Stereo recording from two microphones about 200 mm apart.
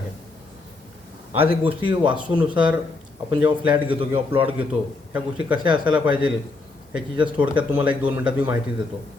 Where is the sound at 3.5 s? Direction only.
25° right (ahead or behind).